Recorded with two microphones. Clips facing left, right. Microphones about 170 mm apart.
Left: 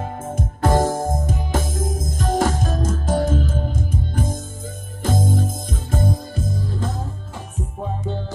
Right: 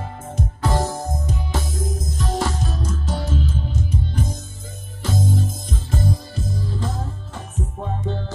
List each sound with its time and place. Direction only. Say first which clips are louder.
0.0 s music: left 2 dB; 50° left (ahead or behind)